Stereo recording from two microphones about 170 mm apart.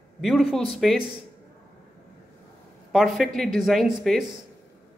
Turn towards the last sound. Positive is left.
turn(degrees=0)  # may be behind; listen again after turning